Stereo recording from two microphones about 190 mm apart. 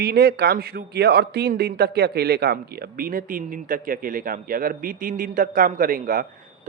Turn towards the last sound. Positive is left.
turn(degrees=-45)  # may be behind; listen again after turning